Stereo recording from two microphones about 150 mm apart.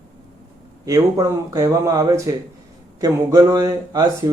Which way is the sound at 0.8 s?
20° right (ahead or behind).